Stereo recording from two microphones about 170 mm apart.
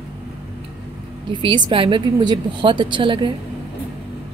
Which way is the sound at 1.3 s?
30° right (ahead or behind).